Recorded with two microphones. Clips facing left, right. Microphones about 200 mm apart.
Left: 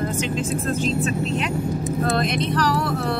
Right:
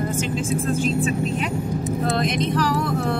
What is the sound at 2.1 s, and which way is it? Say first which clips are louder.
Speech: right 1 dB; 15° right (ahead or behind).